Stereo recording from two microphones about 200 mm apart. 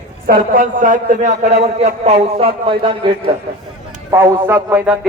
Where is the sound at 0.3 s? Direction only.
45° right (ahead or behind); by 3.2 s 25° right (ahead or behind).